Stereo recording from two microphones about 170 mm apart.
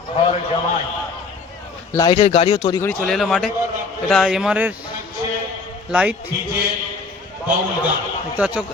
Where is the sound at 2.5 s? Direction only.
20° left (ahead or behind).